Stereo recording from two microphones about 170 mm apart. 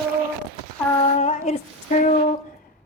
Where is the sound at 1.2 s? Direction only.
45° left (ahead or behind).